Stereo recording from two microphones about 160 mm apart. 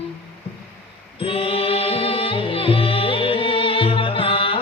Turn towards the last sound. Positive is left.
turn(degrees=35)  # may be behind; listen again after turning